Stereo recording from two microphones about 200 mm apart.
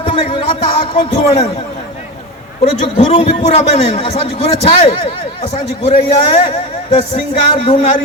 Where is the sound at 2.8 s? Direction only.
30° left (ahead or behind).